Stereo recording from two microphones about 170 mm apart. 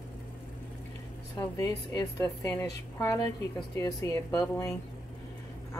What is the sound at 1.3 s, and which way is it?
Speech, 20° left (ahead or behind).